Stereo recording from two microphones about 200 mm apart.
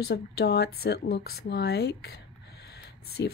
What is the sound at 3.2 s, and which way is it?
Speech, 60° left (ahead or behind).